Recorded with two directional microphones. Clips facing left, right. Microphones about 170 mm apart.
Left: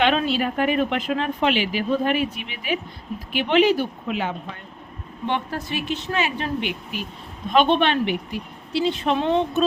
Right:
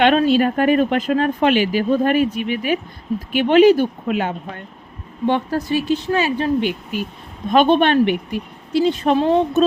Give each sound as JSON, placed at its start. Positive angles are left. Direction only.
{"t": 0.2, "sound": "a woman's voice", "side_deg": -45}
{"t": 7.5, "sound": "speech", "side_deg": -45}